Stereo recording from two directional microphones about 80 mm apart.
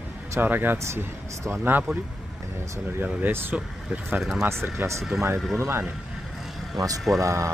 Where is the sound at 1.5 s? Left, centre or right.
Right.